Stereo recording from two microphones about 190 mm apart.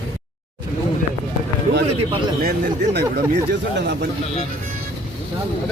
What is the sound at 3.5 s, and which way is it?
Speech, 65° right (ahead or behind).